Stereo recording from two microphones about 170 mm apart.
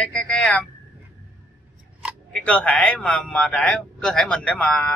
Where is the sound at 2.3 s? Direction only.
10° left (ahead or behind).